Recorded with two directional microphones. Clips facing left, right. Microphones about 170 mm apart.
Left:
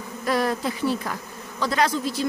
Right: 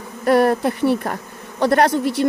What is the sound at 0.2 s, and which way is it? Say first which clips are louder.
Speech: right 8 dB; 60° right (ahead or behind).